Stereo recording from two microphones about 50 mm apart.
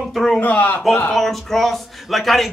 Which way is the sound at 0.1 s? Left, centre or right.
Centre.